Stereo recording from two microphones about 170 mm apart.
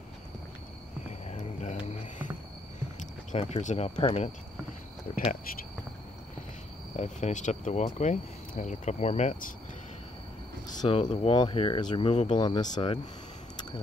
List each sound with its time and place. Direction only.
1.0 s a sound: 40° left (ahead or behind)
3.0 s speech: 45° left (ahead or behind)
7.0 s speech: 45° left (ahead or behind)
10.7 s a sound: 25° left (ahead or behind)
11.0 s speech: 40° left (ahead or behind)
11.3 s speech: 30° left (ahead or behind)